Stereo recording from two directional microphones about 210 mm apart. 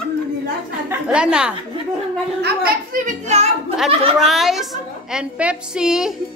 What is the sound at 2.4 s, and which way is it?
Speech, 40° right (ahead or behind).